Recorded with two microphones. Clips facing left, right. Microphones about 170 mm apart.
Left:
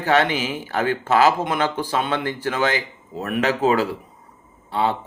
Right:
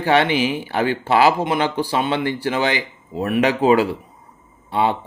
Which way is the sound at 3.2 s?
15° right (ahead or behind).